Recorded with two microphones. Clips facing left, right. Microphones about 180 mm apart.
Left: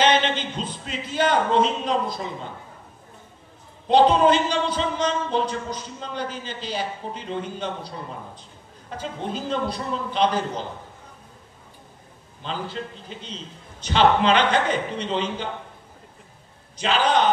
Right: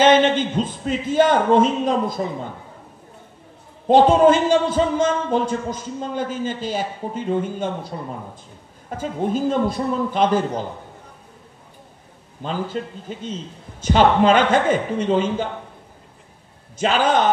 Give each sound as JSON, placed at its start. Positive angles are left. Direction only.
{"t": 0.0, "sound": "a man's voice", "side_deg": -50}
{"t": 3.8, "sound": "a man's voice", "side_deg": -45}
{"t": 8.9, "sound": "a man's voice", "side_deg": -50}
{"t": 12.4, "sound": "a man's voice", "side_deg": -45}
{"t": 16.7, "sound": "a man's voice", "side_deg": -45}